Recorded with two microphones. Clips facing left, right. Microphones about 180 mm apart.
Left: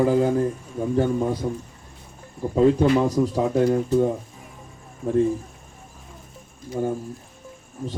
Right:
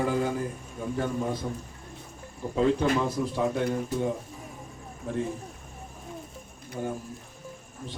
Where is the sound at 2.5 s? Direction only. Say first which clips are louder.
Left 7 dB; 40° left (ahead or behind).